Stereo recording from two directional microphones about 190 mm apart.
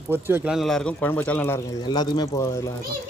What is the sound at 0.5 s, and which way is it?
A man's voice, centre (ahead or behind).